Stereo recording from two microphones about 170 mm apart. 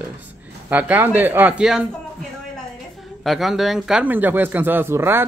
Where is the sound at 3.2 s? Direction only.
Centre (ahead or behind).